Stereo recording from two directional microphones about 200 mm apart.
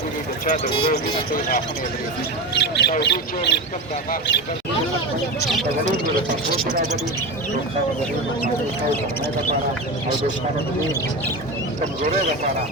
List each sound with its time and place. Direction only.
0.9 s speech: 45° left (ahead or behind)
2.6 s squawk: 55° left (ahead or behind)
3.0 s speech: 55° left (ahead or behind)